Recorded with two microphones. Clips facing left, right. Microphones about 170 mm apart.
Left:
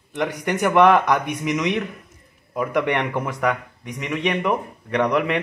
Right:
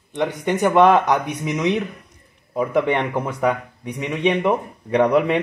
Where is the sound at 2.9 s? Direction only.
25° right (ahead or behind).